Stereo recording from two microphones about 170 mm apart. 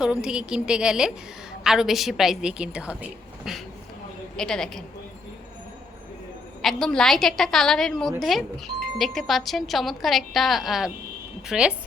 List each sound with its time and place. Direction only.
0.0 s a woman's voice: 5° right (ahead or behind)
6.6 s a woman's voice: centre (ahead or behind)